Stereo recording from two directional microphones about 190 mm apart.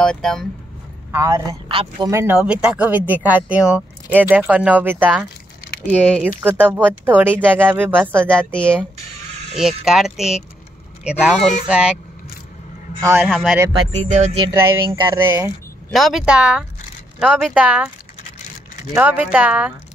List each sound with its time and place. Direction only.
0.0 s speech: 5° left (ahead or behind)
1.1 s speech: 15° right (ahead or behind)
2.1 s speech: 10° right (ahead or behind)
5.9 s speech: 10° left (ahead or behind)
6.2 s speech: 10° right (ahead or behind)
8.5 s speech: 5° left (ahead or behind)
13.0 s speech: 15° right (ahead or behind)
13.3 s speech: centre (ahead or behind)
13.9 s speech: 40° right (ahead or behind)
14.5 s speech: 15° right (ahead or behind)
15.9 s speech: centre (ahead or behind)
18.9 s speech: 10° right (ahead or behind)